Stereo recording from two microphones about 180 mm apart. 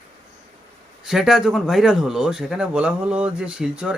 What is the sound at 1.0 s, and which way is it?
Speech, centre (ahead or behind).